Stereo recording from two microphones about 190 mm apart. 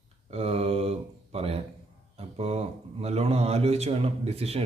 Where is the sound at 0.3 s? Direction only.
30° right (ahead or behind).